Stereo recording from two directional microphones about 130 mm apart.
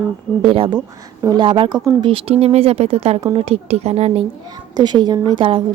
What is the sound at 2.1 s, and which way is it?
Speech, 45° right (ahead or behind).